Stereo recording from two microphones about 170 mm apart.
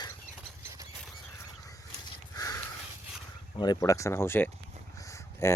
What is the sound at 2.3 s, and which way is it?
Sniff, 20° left (ahead or behind).